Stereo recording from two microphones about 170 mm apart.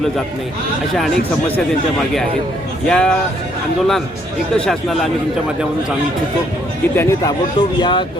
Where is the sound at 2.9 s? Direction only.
5° left (ahead or behind).